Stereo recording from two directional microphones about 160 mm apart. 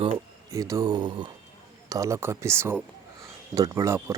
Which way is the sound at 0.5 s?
20° right (ahead or behind).